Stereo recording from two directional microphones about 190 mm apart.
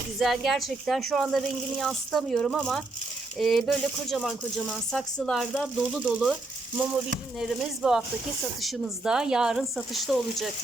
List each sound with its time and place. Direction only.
0.2 s speech: centre (ahead or behind)
7.3 s speech: centre (ahead or behind)